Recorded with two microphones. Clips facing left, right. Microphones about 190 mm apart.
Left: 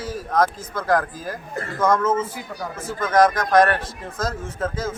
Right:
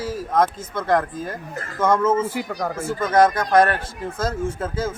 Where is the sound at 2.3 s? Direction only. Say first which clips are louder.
Right 6 dB; 80° right.